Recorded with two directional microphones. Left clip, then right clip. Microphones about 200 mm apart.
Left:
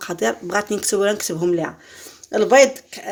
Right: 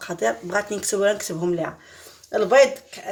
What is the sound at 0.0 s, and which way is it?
Speech, 40° left (ahead or behind).